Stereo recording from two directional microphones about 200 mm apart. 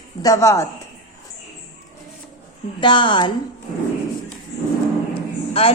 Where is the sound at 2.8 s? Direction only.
25° left (ahead or behind).